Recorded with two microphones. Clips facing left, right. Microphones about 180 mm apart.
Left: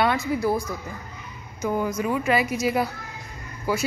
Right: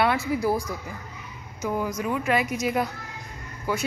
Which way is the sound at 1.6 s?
Centre (ahead or behind).